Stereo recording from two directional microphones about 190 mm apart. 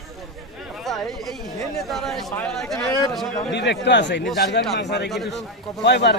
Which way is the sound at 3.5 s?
65° left (ahead or behind).